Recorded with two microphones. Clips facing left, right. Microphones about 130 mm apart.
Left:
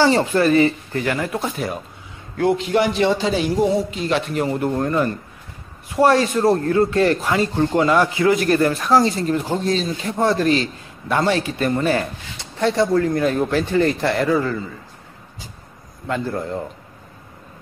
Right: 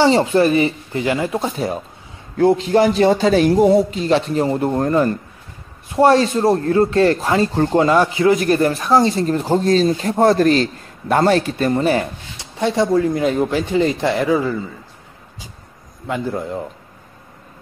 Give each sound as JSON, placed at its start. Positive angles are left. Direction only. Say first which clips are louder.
{"t": 0.0, "sound": "speech", "louder": "right 2 dB", "side_deg": -20}
{"t": 1.4, "sound": "a man's voice", "louder": "right 3 dB", "side_deg": -30}
{"t": 4.0, "sound": "a man's voice", "louder": "right 4 dB", "side_deg": -30}
{"t": 11.5, "sound": "speech", "louder": "right 3 dB", "side_deg": -30}
{"t": 16.1, "sound": "speech", "louder": "right 1 dB", "side_deg": -10}